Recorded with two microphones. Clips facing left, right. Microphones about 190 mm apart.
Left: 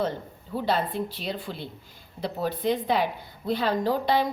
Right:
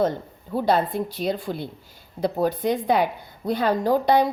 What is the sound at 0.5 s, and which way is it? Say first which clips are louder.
Speech: right 5 dB; 45° right (ahead or behind).